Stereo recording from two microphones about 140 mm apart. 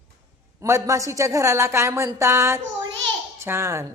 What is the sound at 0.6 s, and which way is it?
A woman's voice, 20° right (ahead or behind).